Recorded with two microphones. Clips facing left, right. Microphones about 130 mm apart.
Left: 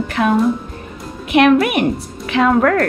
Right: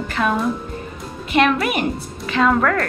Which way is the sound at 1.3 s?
60° left (ahead or behind).